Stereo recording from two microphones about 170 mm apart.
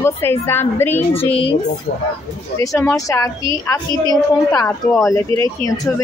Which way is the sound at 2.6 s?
20° left (ahead or behind).